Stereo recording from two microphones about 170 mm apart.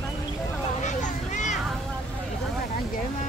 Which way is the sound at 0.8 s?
45° left (ahead or behind).